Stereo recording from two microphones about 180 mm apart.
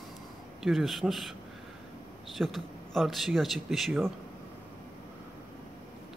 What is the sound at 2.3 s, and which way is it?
Speech, centre (ahead or behind).